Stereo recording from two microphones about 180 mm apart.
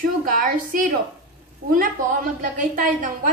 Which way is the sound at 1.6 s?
60° right (ahead or behind).